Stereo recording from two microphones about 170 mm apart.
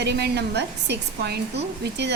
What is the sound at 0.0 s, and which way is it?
A woman's voice, 75° right (ahead or behind).